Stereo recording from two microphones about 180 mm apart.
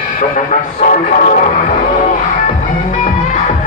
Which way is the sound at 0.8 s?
45° left (ahead or behind).